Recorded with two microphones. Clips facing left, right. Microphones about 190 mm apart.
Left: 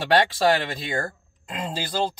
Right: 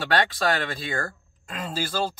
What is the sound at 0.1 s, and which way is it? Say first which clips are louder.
Speech: left 5 dB; 20° left (ahead or behind).